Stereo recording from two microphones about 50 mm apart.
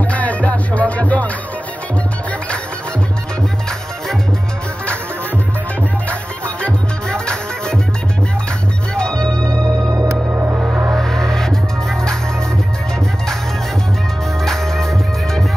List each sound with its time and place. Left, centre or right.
0.0 s music: left
6.0 s music: left
8.9 s organ: centre
9.5 s music: right
11.0 s music: centre
14.4 s music: centre